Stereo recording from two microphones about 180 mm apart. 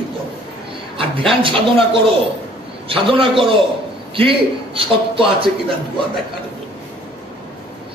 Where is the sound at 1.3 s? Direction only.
30° right (ahead or behind).